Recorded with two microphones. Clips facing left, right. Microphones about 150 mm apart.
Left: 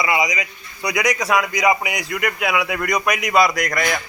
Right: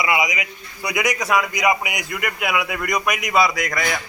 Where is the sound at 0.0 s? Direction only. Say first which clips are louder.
Left 1 dB; 5° right (ahead or behind).